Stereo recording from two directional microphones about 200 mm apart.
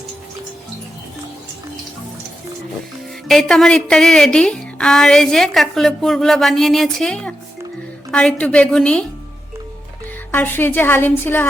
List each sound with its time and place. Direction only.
3.2 s a woman's voice: centre (ahead or behind)
10.3 s a woman's voice: 10° left (ahead or behind)